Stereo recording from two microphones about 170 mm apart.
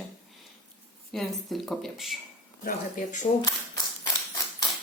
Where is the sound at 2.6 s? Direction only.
55° left (ahead or behind).